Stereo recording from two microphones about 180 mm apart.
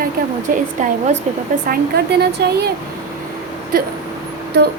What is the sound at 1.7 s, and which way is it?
Speech, 60° right (ahead or behind).